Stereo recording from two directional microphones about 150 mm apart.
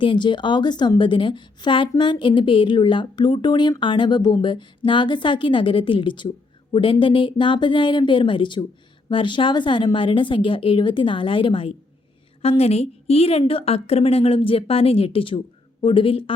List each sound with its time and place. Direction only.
0.0 s speech: 30° left (ahead or behind)